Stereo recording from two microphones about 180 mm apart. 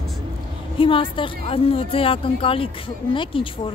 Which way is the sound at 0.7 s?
30° left (ahead or behind).